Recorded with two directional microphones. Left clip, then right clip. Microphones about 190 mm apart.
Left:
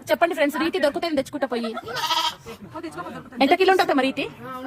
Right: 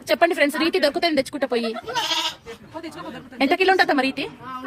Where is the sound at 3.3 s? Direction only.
Centre (ahead or behind).